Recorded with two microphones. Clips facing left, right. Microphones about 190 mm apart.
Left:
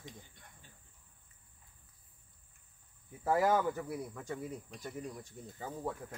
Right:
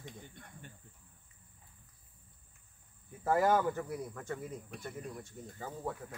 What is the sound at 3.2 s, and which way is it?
Speech, 5° left (ahead or behind).